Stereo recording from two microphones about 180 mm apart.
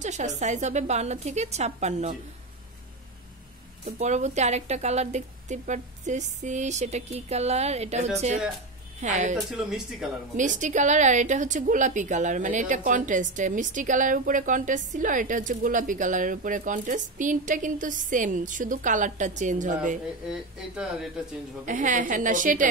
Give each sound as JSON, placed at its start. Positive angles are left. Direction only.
{"t": 0.0, "sound": "a woman's voice", "side_deg": -40}
{"t": 3.8, "sound": "a woman's voice", "side_deg": -40}
{"t": 9.5, "sound": "speech", "side_deg": 0}
{"t": 10.3, "sound": "a woman's voice", "side_deg": -45}
{"t": 20.2, "sound": "speech", "side_deg": -5}
{"t": 21.6, "sound": "a woman's voice", "side_deg": -45}